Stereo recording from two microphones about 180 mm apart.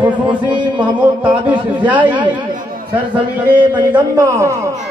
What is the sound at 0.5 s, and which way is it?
Speech, 25° right (ahead or behind).